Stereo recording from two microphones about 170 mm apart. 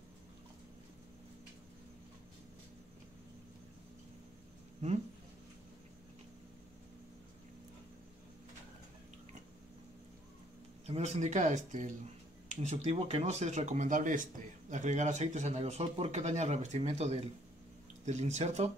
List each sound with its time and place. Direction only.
10.9 s speech: 40° right (ahead or behind)